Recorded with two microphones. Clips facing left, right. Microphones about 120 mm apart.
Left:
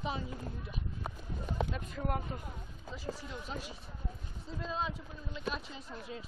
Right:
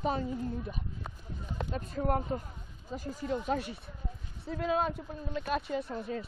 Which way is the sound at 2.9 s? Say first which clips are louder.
Right 8 dB; 50° right (ahead or behind).